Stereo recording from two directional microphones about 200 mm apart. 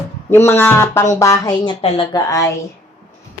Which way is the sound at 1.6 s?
25° left (ahead or behind).